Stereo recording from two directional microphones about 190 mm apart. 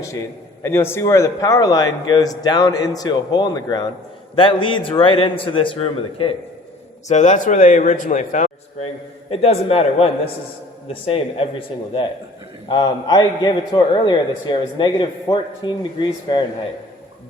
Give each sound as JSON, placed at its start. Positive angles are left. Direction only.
{"t": 0.6, "sound": "a man's voice", "side_deg": 15}
{"t": 7.1, "sound": "a man's voice", "side_deg": 40}
{"t": 12.6, "sound": "a man's voice", "side_deg": 25}